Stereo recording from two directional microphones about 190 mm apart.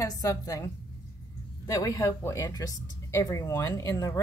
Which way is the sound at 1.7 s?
20° left (ahead or behind).